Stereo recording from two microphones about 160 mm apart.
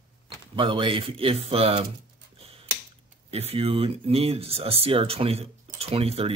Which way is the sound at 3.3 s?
40° right (ahead or behind).